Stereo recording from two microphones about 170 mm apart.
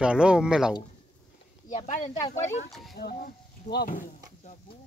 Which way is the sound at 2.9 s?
70° left (ahead or behind).